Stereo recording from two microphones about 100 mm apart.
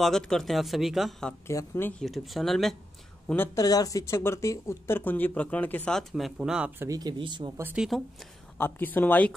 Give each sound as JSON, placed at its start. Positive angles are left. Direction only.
{"t": 0.0, "sound": "speech", "side_deg": 5}
{"t": 1.5, "sound": "speech", "side_deg": 30}
{"t": 2.0, "sound": "speech", "side_deg": 0}
{"t": 3.5, "sound": "speech", "side_deg": 40}
{"t": 5.9, "sound": "speech", "side_deg": 0}
{"t": 6.9, "sound": "speech", "side_deg": -40}
{"t": 7.7, "sound": "speech", "side_deg": -5}
{"t": 8.5, "sound": "speech", "side_deg": 20}